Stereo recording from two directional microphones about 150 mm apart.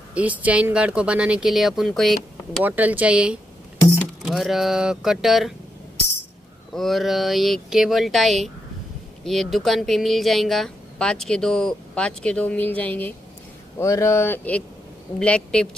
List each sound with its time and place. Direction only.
0.1 s speech: 10° right (ahead or behind)
2.6 s speech: 10° right (ahead or behind)
6.7 s speech: centre (ahead or behind)